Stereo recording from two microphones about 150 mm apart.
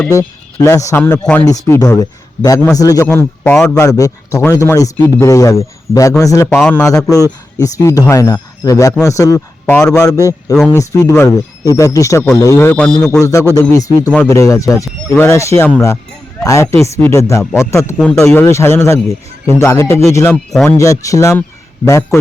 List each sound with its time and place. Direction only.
0.1 s a man's voice: 20° left (ahead or behind)
3.8 s speech: 20° left (ahead or behind)
6.5 s a man's voice: 10° left (ahead or behind)
7.3 s speech: 25° left (ahead or behind)
9.7 s a man's voice: 5° left (ahead or behind)
10.0 s speech: 20° left (ahead or behind)
13.1 s a man's voice: 20° left (ahead or behind)
17.9 s a man's voice: 5° left (ahead or behind)
18.3 s a man's voice: 15° left (ahead or behind)
20.5 s a man's voice: centre (ahead or behind)
20.7 s speech: 20° left (ahead or behind)